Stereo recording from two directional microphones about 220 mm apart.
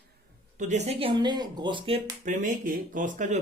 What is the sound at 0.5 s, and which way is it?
Speech, 30° right (ahead or behind).